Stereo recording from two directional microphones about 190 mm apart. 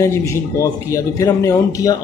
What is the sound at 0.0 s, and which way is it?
Speech, 15° left (ahead or behind).